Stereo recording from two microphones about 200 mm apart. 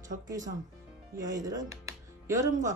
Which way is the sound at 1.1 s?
20° right (ahead or behind).